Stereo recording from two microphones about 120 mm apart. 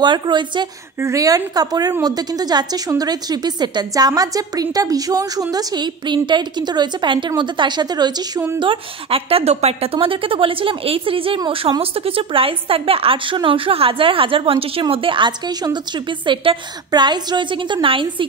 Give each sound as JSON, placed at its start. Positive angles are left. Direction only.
{"t": 0.0, "sound": "a woman's voice", "side_deg": -40}
{"t": 1.0, "sound": "a woman's voice", "side_deg": -30}
{"t": 8.5, "sound": "a woman's voice", "side_deg": -50}